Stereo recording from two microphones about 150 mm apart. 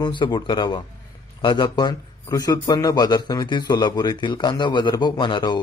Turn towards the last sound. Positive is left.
turn(degrees=30)  # may be behind; listen again after turning